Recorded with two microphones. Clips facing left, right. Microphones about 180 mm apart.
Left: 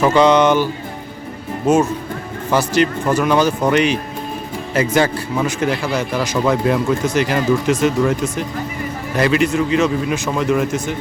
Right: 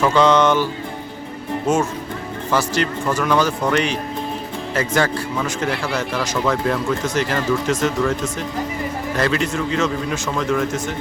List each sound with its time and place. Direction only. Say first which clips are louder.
0.0 s speech: left 3 dB; 15° left (ahead or behind)